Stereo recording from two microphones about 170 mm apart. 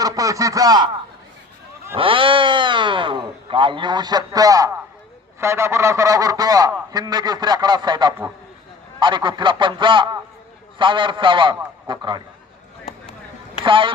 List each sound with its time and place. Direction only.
0.0 s speech: 20° right (ahead or behind)
2.0 s speech: 30° right (ahead or behind)
13.7 s speech: 30° right (ahead or behind)